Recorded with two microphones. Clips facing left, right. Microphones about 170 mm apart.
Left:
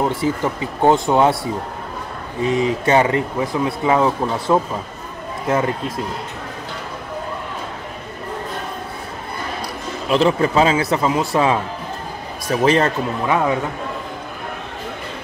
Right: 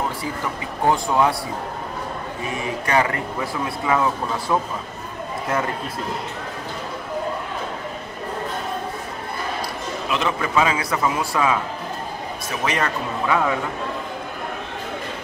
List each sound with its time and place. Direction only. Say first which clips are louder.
0.2 s speech: left 7 dB; 25° left (ahead or behind)
2.4 s speech: left 10 dB; 20° left (ahead or behind)
10.1 s speech: left 7 dB; 30° left (ahead or behind)
12.6 s a man's voice: left 7 dB; 30° left (ahead or behind)